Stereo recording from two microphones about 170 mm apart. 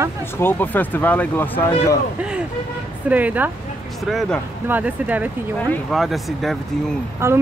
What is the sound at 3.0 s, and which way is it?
Speech, 10° right (ahead or behind).